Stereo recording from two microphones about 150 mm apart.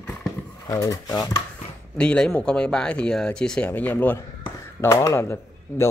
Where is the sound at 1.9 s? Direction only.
5° left (ahead or behind).